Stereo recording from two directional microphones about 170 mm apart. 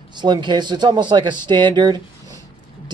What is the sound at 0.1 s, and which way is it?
Speech, 25° right (ahead or behind).